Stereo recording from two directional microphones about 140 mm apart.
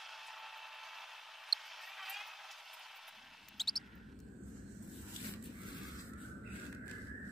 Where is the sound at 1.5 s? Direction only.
Centre (ahead or behind).